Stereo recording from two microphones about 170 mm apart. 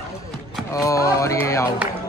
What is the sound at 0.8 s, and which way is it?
Speech, 20° left (ahead or behind).